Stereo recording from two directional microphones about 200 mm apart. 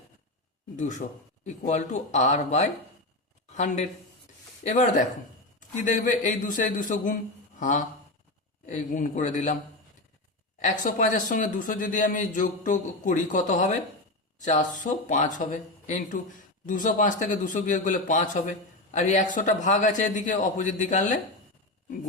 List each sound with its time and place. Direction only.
0.8 s a man's voice: 35° left (ahead or behind)
10.6 s a man's voice: 40° left (ahead or behind)